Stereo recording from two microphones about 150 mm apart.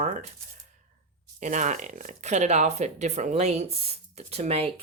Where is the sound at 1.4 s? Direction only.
55° right (ahead or behind).